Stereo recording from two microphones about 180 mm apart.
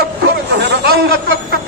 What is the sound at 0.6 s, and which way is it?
Speech, 65° right (ahead or behind).